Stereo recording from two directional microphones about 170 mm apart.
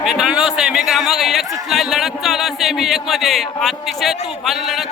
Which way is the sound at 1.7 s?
Centre (ahead or behind).